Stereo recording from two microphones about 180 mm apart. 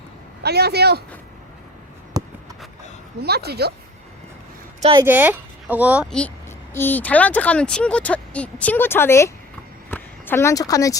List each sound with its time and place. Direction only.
0.4 s speech: 65° right (ahead or behind)
3.2 s speech: 60° right (ahead or behind)
4.8 s speech: 25° right (ahead or behind)
5.0 s speech: 10° right (ahead or behind)
6.1 s a woman's voice: 5° left (ahead or behind)